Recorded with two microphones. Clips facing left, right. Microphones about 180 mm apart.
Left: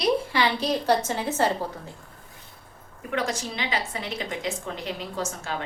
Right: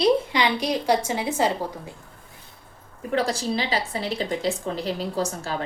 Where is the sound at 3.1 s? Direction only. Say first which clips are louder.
Right 4 dB; 35° right (ahead or behind).